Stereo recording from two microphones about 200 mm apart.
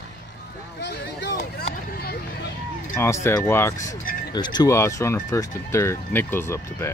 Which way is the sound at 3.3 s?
10° left (ahead or behind).